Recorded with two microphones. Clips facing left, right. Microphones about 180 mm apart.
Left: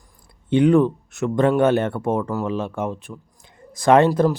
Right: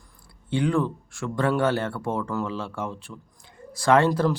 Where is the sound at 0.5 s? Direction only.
20° left (ahead or behind).